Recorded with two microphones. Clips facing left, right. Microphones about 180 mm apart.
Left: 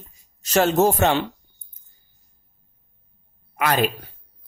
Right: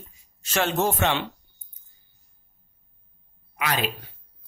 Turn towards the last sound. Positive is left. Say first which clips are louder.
# left 6 dB
turn(degrees=50)  # may be behind; listen again after turning